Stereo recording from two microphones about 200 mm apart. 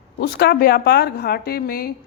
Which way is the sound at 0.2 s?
55° left (ahead or behind).